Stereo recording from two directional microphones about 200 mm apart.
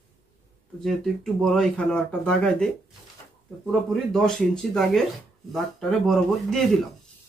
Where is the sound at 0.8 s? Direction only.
Centre (ahead or behind).